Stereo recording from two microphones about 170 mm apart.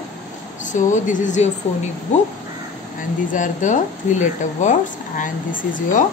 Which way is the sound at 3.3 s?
45° left (ahead or behind).